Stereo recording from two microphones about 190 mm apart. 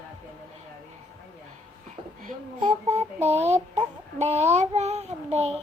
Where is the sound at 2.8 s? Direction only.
35° right (ahead or behind).